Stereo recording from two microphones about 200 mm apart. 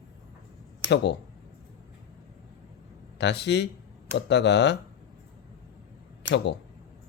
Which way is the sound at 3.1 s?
60° left (ahead or behind).